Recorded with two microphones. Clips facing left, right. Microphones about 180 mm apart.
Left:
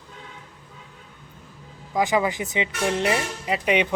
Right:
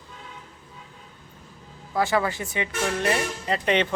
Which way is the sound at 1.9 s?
15° left (ahead or behind).